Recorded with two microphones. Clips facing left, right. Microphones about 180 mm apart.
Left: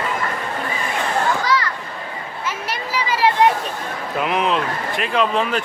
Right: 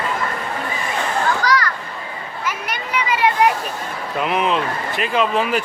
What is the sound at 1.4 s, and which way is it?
Children playing, 25° left (ahead or behind).